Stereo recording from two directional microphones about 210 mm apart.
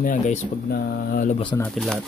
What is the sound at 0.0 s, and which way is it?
Mantra, 35° left (ahead or behind).